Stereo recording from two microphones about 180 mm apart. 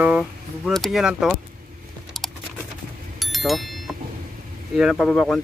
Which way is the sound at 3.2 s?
Centre (ahead or behind).